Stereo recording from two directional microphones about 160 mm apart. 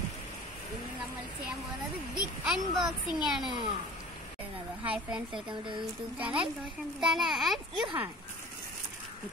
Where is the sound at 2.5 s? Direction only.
Centre (ahead or behind).